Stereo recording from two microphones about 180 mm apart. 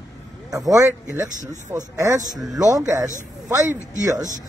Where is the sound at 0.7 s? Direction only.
20° right (ahead or behind).